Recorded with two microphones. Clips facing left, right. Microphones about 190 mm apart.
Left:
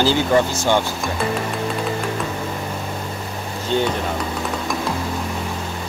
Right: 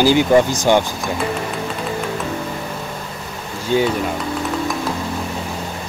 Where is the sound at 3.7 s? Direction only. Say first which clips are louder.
Right 3 dB; 10° right (ahead or behind).